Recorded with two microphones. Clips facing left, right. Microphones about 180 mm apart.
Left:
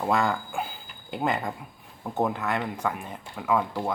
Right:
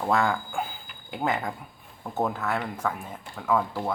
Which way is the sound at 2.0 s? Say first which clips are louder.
Left 1 dB; 15° left (ahead or behind).